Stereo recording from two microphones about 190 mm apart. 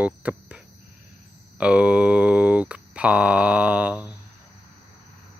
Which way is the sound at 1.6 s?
5° right (ahead or behind).